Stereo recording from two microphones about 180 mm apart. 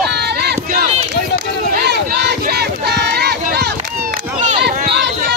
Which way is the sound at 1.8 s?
70° right (ahead or behind).